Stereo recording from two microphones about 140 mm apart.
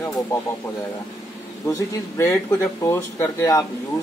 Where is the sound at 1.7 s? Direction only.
20° left (ahead or behind).